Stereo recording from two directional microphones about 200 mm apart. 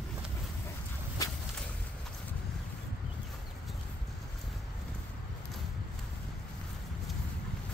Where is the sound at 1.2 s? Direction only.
15° left (ahead or behind).